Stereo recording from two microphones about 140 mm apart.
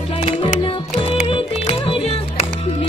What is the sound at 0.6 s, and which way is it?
Music, 45° left (ahead or behind).